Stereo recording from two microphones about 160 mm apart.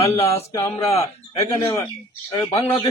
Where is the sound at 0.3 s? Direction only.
20° left (ahead or behind).